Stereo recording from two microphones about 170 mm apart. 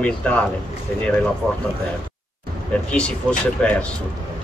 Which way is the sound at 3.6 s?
5° left (ahead or behind).